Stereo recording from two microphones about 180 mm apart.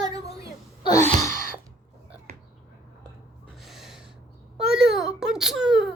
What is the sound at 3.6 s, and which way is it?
Gasp, centre (ahead or behind).